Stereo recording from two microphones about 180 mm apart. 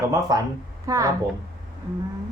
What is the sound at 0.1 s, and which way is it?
Speech, 20° right (ahead or behind).